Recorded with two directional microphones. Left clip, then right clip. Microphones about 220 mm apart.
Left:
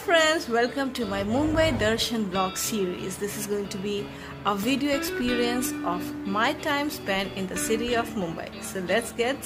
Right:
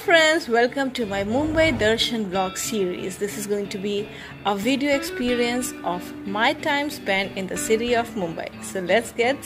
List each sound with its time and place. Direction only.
0.0 s speech: 20° right (ahead or behind)